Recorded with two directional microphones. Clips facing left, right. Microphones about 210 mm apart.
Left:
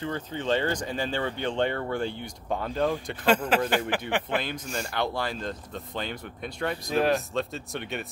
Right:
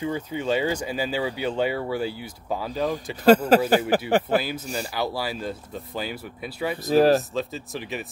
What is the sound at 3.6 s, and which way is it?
Speech, 40° right (ahead or behind).